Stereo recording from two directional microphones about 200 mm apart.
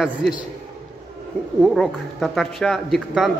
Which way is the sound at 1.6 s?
Centre (ahead or behind).